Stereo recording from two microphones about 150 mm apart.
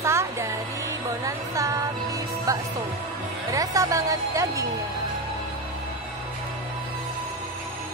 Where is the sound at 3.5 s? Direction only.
20° right (ahead or behind).